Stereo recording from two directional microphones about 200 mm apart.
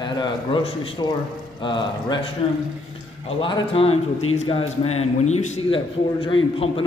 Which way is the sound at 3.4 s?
25° left (ahead or behind).